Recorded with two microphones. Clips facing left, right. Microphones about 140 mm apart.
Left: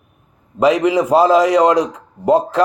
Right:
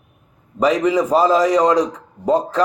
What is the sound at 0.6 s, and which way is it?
A man's voice, 10° left (ahead or behind).